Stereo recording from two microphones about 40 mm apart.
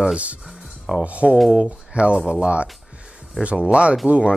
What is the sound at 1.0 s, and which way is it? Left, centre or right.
Speech, right.